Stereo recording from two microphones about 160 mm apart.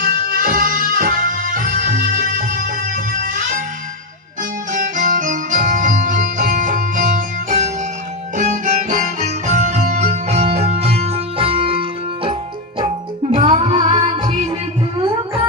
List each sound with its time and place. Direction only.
0.0 s music: 65° right (ahead or behind)
4.7 s music: 55° right (ahead or behind)